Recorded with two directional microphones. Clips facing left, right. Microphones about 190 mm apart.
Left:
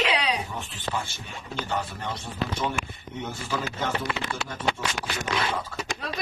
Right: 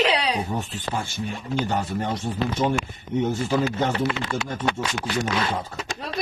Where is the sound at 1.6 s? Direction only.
45° right (ahead or behind).